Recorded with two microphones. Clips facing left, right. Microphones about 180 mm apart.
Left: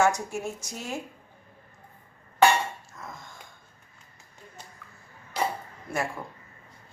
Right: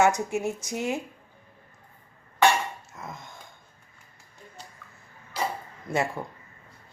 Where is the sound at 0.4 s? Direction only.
20° right (ahead or behind).